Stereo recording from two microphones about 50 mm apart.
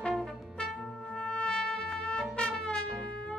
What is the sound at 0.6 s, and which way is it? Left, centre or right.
Music, centre.